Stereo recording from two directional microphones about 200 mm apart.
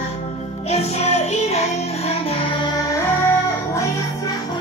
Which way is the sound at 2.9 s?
15° left (ahead or behind).